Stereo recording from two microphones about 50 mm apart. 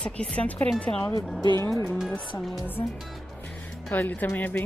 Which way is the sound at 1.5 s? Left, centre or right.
Left.